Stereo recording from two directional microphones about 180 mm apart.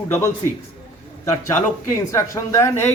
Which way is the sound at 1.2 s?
15° left (ahead or behind).